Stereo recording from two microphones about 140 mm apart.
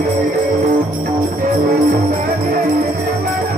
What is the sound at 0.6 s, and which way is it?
Jingle bell, 65° right (ahead or behind).